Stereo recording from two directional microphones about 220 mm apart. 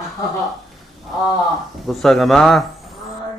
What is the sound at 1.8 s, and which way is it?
Speech, centre (ahead or behind).